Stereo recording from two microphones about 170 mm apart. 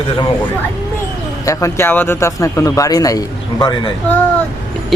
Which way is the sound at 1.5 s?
15° left (ahead or behind).